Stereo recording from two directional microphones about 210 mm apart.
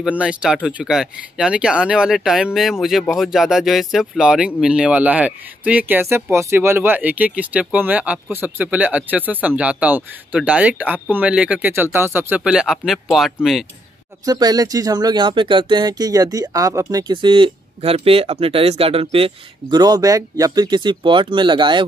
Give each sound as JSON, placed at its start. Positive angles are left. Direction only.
{"t": 0.0, "sound": "speech", "side_deg": -5}
{"t": 14.2, "sound": "speech", "side_deg": -20}